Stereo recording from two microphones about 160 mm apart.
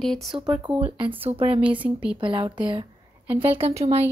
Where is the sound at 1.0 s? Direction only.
35° right (ahead or behind).